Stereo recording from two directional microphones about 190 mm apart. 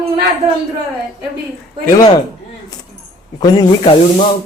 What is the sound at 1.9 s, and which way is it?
Speech, 20° left (ahead or behind).